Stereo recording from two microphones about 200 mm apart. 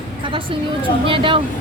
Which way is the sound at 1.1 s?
25° right (ahead or behind).